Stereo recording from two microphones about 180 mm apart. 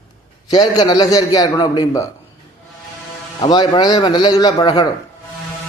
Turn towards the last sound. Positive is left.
turn(degrees=20)  # may be behind; listen again after turning